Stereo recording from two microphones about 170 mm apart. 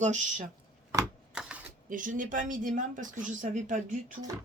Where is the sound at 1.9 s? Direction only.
50° right (ahead or behind).